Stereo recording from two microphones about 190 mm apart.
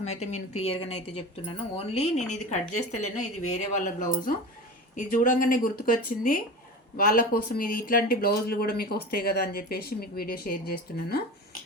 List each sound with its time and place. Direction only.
0.0 s speech: 35° left (ahead or behind); by 11.2 s 55° left (ahead or behind)